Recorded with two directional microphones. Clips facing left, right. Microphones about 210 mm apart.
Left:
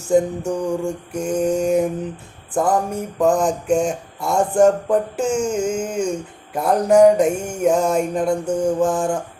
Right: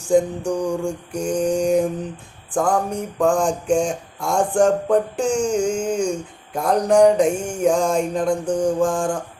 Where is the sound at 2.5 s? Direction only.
5° left (ahead or behind).